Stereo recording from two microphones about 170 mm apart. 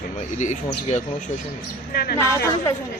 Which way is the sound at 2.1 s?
15° left (ahead or behind).